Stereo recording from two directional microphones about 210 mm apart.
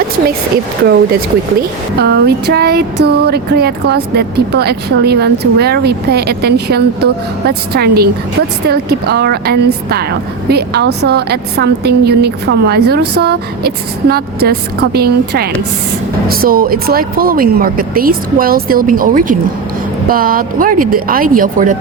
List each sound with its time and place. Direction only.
2.0 s speech: 50° right (ahead or behind)